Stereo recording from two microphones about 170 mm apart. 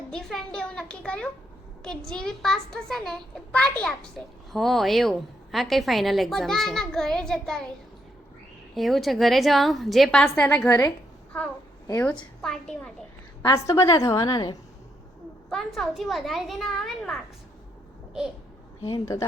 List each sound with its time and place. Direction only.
0.1 s a woman's voice: centre (ahead or behind)
8.7 s a woman's voice: centre (ahead or behind)
12.4 s a woman's voice: 5° left (ahead or behind)
13.4 s a woman's voice: 20° left (ahead or behind)
15.4 s a woman's voice: centre (ahead or behind)
18.8 s speech: 30° left (ahead or behind)